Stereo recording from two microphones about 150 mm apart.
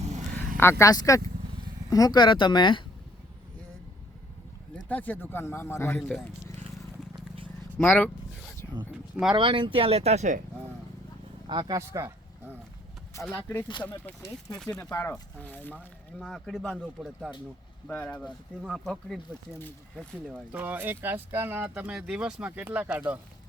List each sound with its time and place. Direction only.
0.3 s speech: 15° left (ahead or behind); by 2.8 s 30° left (ahead or behind)
4.9 s a man's voice: 10° left (ahead or behind)
6.0 s speech: 5° left (ahead or behind)
7.8 s speech: 10° left (ahead or behind)
9.3 s speech: 30° right (ahead or behind); by 10.4 s 55° right (ahead or behind)
11.4 s speech: 25° right (ahead or behind)
13.2 s a man's voice: 15° left (ahead or behind); by 17.3 s 5° right (ahead or behind)
17.8 s a man's voice: 10° left (ahead or behind)
20.3 s speech: 10° right (ahead or behind)